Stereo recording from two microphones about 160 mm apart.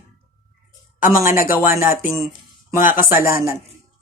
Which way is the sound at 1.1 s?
20° right (ahead or behind).